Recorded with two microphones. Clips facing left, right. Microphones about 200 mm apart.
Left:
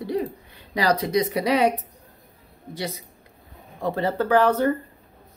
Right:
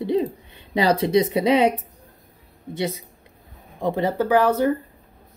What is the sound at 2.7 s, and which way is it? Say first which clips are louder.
A woman's voice: right 5 dB; 25° right (ahead or behind).